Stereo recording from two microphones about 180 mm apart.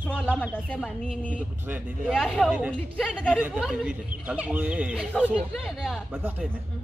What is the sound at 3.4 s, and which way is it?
Speech, 5° right (ahead or behind).